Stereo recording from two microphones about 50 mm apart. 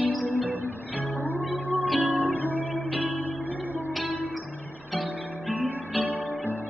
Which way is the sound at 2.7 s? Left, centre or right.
Centre.